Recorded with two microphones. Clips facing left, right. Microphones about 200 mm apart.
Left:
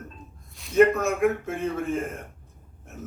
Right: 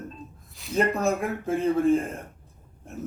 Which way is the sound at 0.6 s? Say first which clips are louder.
Right 5 dB; centre (ahead or behind).